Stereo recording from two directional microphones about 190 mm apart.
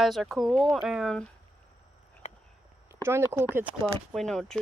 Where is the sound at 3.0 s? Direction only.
10° right (ahead or behind).